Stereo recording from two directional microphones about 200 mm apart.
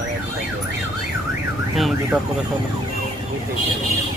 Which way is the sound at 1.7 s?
Centre (ahead or behind).